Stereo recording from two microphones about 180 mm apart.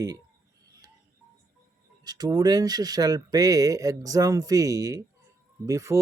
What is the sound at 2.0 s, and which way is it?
Speech, 20° right (ahead or behind).